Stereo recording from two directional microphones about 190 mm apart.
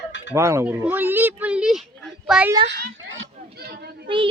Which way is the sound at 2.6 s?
80° right.